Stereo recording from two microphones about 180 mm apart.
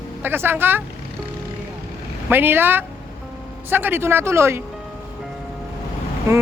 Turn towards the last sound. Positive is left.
turn(degrees=-15)  # may be behind; listen again after turning